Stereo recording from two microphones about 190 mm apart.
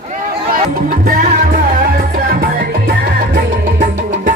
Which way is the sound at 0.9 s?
45° right (ahead or behind).